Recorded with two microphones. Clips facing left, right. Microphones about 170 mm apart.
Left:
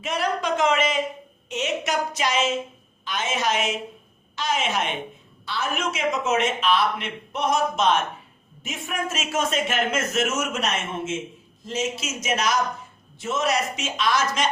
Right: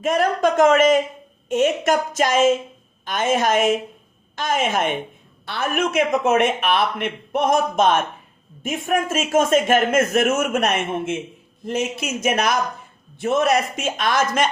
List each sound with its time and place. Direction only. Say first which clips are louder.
0.0 s a man's voice: right 7 dB; 45° right (ahead or behind)